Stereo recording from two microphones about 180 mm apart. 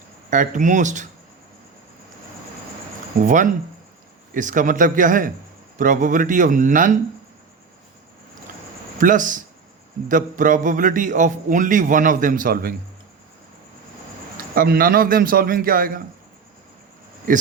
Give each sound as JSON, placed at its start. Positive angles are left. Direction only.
{"t": 0.3, "sound": "a man's voice", "side_deg": -45}
{"t": 3.2, "sound": "a man's voice", "side_deg": -45}
{"t": 9.0, "sound": "a man's voice", "side_deg": -45}
{"t": 14.3, "sound": "a man's voice", "side_deg": -55}